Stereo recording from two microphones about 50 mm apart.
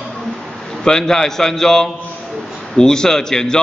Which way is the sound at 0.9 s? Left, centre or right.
Centre.